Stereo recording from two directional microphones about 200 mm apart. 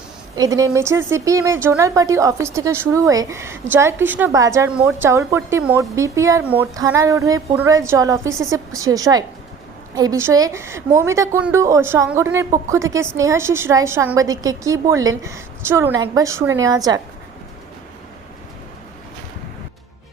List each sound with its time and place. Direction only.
0.3 s a woman's voice: 15° right (ahead or behind)